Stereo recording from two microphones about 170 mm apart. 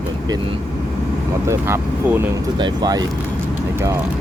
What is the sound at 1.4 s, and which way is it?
Speech, 15° right (ahead or behind).